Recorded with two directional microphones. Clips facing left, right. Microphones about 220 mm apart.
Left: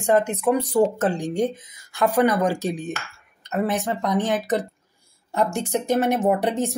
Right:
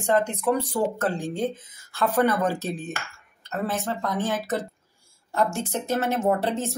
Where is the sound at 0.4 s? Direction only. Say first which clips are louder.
Left 5 dB; 15° left (ahead or behind).